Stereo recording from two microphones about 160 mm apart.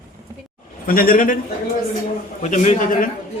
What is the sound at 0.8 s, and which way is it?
Speech, 60° left (ahead or behind).